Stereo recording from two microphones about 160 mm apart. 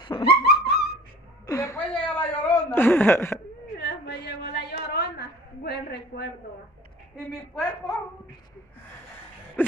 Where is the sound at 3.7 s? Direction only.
90° left.